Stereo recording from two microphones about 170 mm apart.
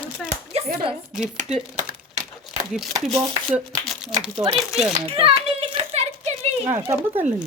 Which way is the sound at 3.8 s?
Centre (ahead or behind).